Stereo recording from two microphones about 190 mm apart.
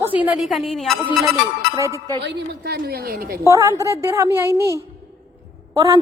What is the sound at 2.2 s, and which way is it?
A woman's voice, 60° right (ahead or behind).